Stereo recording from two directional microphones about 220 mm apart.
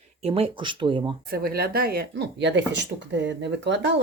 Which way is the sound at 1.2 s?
45° right (ahead or behind).